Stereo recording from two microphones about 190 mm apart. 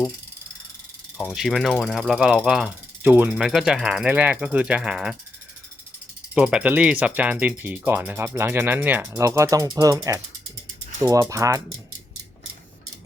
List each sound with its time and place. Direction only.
1.3 s mechanisms: centre (ahead or behind)
6.3 s speech: 5° right (ahead or behind)